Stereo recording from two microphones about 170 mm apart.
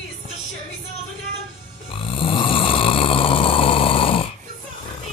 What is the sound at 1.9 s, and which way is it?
Snoring, 30° left (ahead or behind).